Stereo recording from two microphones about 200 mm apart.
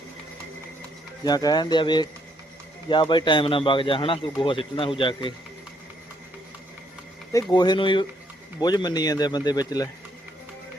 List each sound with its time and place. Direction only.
1.2 s speech: 20° left (ahead or behind)
7.5 s speech: 20° left (ahead or behind)